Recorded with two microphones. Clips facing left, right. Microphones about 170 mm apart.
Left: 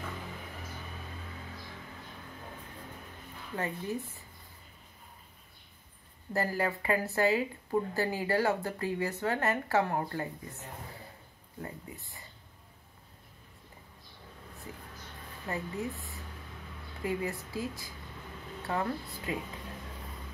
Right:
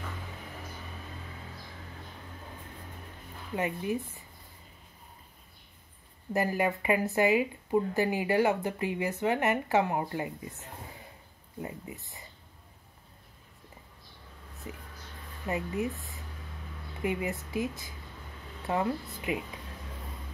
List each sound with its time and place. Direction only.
3.5 s speech: 15° right (ahead or behind)
6.3 s speech: 15° right (ahead or behind)
11.6 s speech: 20° right (ahead or behind)
14.7 s speech: 20° right (ahead or behind)
17.0 s speech: 20° right (ahead or behind)